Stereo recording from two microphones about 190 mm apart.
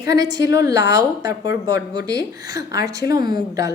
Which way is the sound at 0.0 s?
20° right (ahead or behind).